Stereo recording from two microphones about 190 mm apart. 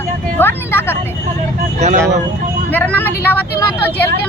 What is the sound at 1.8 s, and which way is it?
Speech, 40° right (ahead or behind).